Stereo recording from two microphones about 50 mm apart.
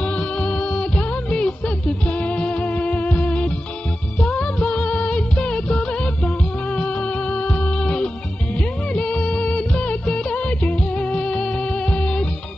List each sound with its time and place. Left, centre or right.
0.0 s music: left
8.5 s music of bollywood: left
11.7 s music: left